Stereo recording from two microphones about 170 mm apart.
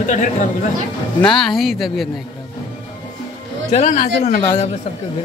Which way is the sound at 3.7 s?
50° left (ahead or behind).